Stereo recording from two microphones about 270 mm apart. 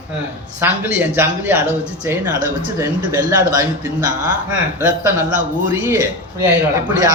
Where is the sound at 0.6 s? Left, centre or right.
Centre.